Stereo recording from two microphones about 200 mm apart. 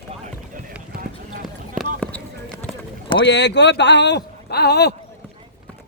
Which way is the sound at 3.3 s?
60° left (ahead or behind).